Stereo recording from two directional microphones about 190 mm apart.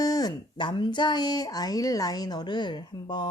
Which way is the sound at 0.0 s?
20° left (ahead or behind).